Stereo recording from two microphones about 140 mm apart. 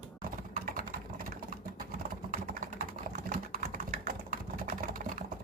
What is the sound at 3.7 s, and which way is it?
Typing, 85° right.